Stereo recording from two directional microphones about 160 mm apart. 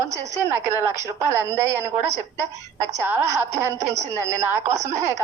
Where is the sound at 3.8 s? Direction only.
45° right (ahead or behind).